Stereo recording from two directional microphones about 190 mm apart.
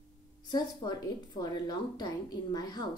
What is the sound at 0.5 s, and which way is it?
A woman's voice, 20° left (ahead or behind).